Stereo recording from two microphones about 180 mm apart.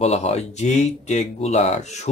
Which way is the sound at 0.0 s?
35° left (ahead or behind).